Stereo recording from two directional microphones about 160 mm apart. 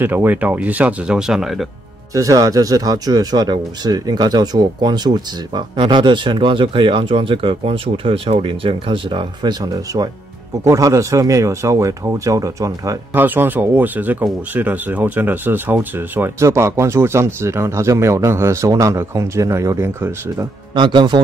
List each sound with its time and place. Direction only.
0.0 s speech: 10° right (ahead or behind)
2.1 s speech: 20° right (ahead or behind)
20.7 s speech: 30° right (ahead or behind)